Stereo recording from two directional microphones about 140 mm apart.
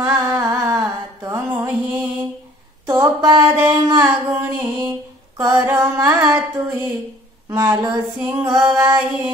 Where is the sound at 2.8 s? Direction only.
25° right (ahead or behind).